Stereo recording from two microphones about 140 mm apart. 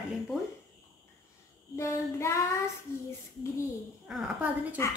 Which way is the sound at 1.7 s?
20° left (ahead or behind).